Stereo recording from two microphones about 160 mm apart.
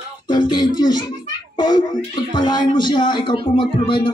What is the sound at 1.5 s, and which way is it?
A child's voice, 25° left (ahead or behind).